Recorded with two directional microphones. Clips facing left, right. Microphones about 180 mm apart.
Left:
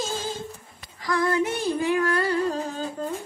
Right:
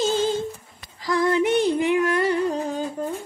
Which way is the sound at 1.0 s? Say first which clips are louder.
Right 3 dB; 25° right (ahead or behind).